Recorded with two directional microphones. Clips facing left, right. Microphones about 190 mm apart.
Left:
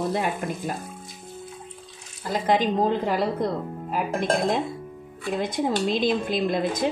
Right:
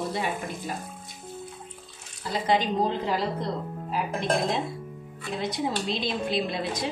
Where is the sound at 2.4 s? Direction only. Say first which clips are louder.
Left 3 dB; 50° left (ahead or behind).